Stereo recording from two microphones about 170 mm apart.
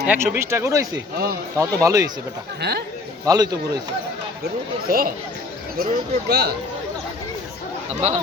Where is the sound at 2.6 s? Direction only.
70° right (ahead or behind).